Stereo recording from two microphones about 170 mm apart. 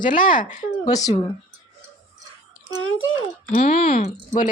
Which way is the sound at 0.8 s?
20° left (ahead or behind).